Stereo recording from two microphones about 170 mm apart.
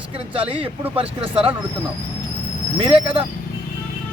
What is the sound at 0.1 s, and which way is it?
Speech, 35° right (ahead or behind).